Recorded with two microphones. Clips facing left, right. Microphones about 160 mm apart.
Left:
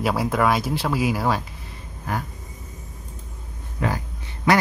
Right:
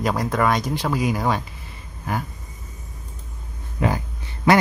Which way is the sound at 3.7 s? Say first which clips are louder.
Right 3 dB; 20° right (ahead or behind).